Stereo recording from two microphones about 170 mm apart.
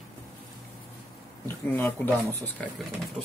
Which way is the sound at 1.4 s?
10° left (ahead or behind).